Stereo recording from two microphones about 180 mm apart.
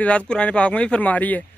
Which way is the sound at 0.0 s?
5° left (ahead or behind).